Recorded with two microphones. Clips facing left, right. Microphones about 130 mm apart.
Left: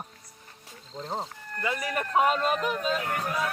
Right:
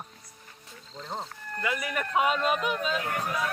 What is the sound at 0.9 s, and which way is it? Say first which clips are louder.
Speech: left 3 dB; 35° left (ahead or behind).